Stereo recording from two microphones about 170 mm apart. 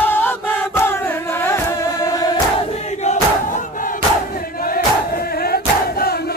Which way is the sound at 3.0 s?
50° left (ahead or behind).